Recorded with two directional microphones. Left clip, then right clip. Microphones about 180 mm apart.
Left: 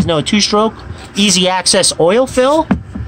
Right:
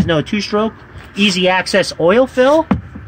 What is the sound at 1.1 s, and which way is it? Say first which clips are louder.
Speech: left 2 dB; 60° left (ahead or behind).